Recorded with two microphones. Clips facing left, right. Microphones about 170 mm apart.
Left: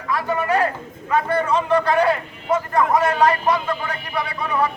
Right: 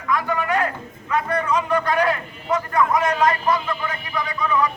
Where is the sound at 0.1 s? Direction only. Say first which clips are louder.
Left 1 dB; 30° left (ahead or behind).